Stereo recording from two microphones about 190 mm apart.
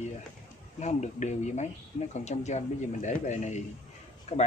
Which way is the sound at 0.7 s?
35° left (ahead or behind).